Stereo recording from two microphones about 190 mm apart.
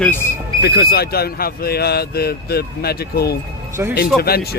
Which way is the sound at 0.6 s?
55° left (ahead or behind).